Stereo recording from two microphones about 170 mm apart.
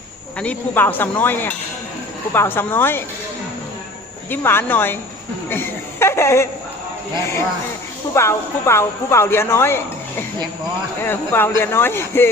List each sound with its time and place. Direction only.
0.3 s speech: 10° left (ahead or behind)
4.3 s speech: 10° left (ahead or behind)
8.1 s speech: 15° left (ahead or behind)